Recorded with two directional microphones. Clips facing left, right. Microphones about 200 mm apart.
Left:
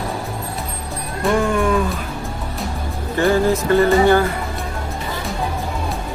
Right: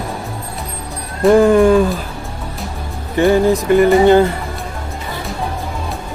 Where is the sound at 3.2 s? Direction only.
20° right (ahead or behind).